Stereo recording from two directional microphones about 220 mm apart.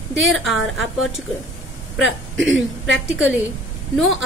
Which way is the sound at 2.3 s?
60° right (ahead or behind).